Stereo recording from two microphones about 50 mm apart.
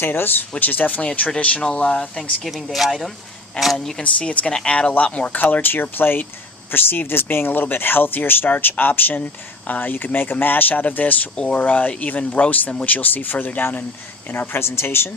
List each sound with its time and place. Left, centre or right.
0.0 s speech: left; by 2.3 s centre
2.4 s speech: centre
4.0 s speech: left
11.3 s speech: centre
11.6 s speech: left